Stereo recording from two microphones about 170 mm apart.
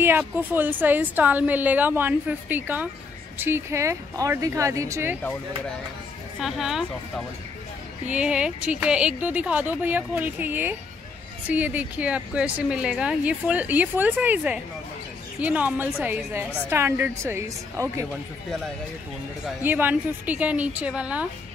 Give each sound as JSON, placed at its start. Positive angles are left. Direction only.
{"t": 0.2, "sound": "a woman's voice", "side_deg": -10}
{"t": 6.4, "sound": "a woman's voice", "side_deg": 0}
{"t": 8.1, "sound": "a woman's voice", "side_deg": -5}
{"t": 19.4, "sound": "a woman's voice", "side_deg": -10}